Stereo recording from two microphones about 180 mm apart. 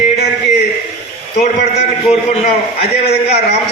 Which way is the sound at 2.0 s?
35° left (ahead or behind).